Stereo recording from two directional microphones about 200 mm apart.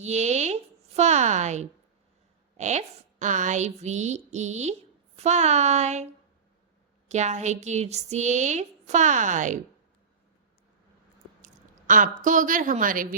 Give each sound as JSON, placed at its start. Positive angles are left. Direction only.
{"t": 0.0, "sound": "a sound", "side_deg": -35}
{"t": 2.6, "sound": "speech", "side_deg": -35}
{"t": 7.1, "sound": "speech", "side_deg": -35}
{"t": 11.4, "sound": "speech", "side_deg": -40}